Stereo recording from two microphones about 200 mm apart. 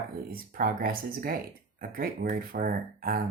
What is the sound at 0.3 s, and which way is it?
Speech, 45° right (ahead or behind).